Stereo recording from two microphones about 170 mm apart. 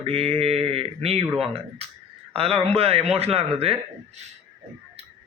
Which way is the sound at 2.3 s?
35° right (ahead or behind).